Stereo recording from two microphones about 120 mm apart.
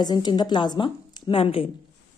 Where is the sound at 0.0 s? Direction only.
35° left (ahead or behind).